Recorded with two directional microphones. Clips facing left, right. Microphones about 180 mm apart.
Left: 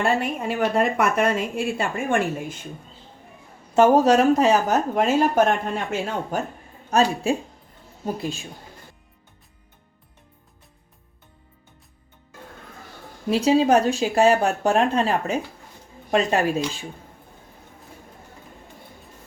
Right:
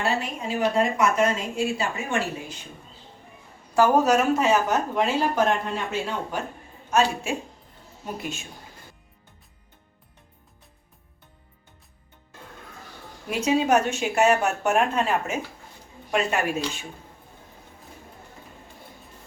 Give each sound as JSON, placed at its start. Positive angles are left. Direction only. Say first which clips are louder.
{"t": 0.0, "sound": "a woman's voice", "louder": "left 4 dB", "side_deg": 55}
{"t": 3.8, "sound": "speech", "louder": "left 4 dB", "side_deg": 25}
{"t": 6.9, "sound": "speech", "louder": "left 3 dB", "side_deg": 35}
{"t": 13.3, "sound": "speech", "louder": "left 4 dB", "side_deg": 35}